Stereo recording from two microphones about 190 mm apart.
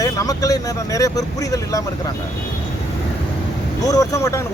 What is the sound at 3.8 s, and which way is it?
Speech, 20° left (ahead or behind).